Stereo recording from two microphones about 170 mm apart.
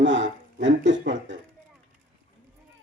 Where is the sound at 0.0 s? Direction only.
90° right.